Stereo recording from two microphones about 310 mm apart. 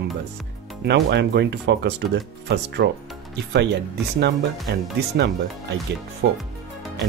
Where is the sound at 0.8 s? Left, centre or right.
Right.